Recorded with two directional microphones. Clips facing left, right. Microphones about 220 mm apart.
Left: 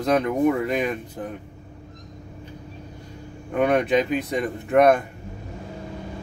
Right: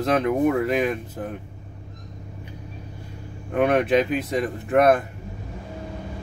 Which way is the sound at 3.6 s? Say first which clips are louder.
Right 1 dB; centre (ahead or behind).